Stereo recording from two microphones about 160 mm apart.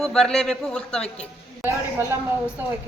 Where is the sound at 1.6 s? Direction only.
15° right (ahead or behind).